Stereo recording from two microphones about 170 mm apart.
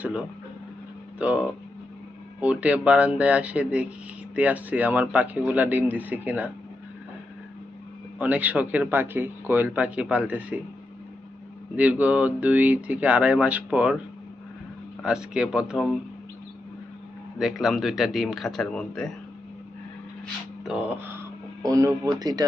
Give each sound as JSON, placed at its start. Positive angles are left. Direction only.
{"t": 0.0, "sound": "speech", "side_deg": -5}
{"t": 8.2, "sound": "speech", "side_deg": -10}
{"t": 11.8, "sound": "speech", "side_deg": -10}
{"t": 15.0, "sound": "speech", "side_deg": -5}
{"t": 17.3, "sound": "speech", "side_deg": 0}
{"t": 20.7, "sound": "speech", "side_deg": -5}